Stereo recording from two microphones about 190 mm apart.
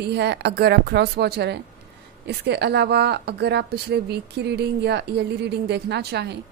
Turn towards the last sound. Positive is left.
turn(degrees=-60)  # may be behind; listen again after turning